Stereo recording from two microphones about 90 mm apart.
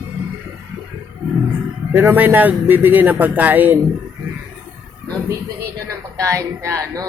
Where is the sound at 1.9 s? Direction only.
25° right (ahead or behind).